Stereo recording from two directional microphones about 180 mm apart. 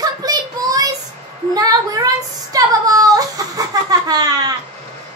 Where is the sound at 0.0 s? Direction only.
20° right (ahead or behind).